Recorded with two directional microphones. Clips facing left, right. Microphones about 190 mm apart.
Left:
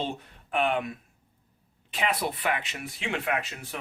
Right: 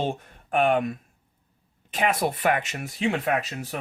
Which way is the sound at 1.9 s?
45° right (ahead or behind).